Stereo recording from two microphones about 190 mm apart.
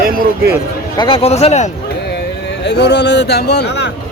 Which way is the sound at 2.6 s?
65° left (ahead or behind).